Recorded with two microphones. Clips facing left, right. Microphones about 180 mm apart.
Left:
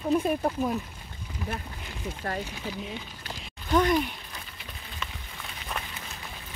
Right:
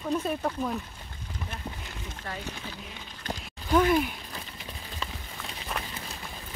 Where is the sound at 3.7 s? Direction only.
5° right (ahead or behind).